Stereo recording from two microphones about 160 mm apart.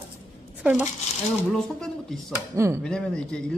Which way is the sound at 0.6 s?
10° right (ahead or behind).